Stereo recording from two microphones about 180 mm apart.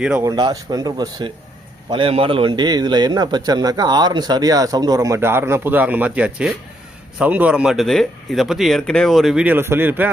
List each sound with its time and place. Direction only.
0.2 s a man's voice: 25° right (ahead or behind)